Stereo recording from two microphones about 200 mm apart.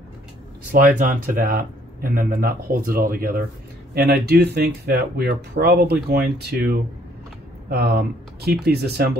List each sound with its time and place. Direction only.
0.7 s speech: 40° right (ahead or behind)